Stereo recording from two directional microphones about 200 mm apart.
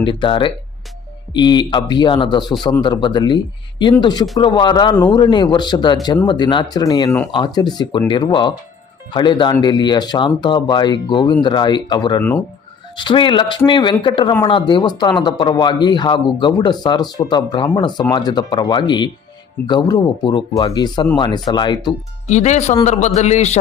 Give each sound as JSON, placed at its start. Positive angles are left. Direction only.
{"t": 0.0, "sound": "speech", "side_deg": 25}
{"t": 22.3, "sound": "a man's voice", "side_deg": 35}